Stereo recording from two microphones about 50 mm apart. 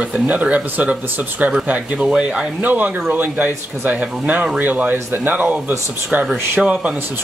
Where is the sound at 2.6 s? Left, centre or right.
Right.